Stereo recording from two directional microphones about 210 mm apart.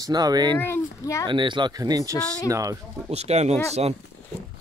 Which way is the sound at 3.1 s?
30° right (ahead or behind).